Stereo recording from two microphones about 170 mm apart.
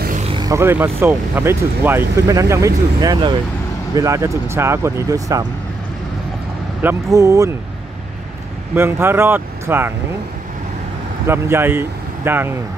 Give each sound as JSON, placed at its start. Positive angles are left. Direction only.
{"t": 0.3, "sound": "vehicle", "side_deg": -25}
{"t": 0.6, "sound": "speech", "side_deg": -15}
{"t": 6.8, "sound": "speech", "side_deg": -15}
{"t": 8.7, "sound": "speech", "side_deg": -15}
{"t": 11.2, "sound": "speech", "side_deg": -15}